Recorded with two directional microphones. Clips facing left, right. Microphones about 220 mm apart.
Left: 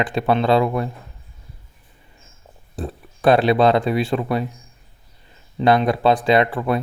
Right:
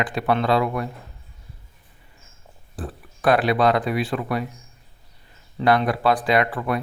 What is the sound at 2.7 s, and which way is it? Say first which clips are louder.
Speech: left 4 dB; 25° left (ahead or behind).